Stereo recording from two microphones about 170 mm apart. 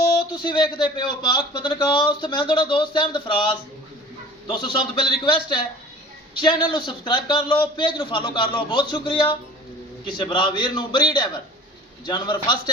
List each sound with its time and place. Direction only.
0.4 s a man's voice: 25° left (ahead or behind)
4.4 s a man's voice: 25° left (ahead or behind)